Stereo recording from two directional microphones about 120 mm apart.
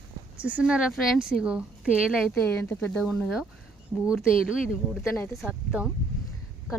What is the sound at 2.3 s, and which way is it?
Speech, 10° left (ahead or behind).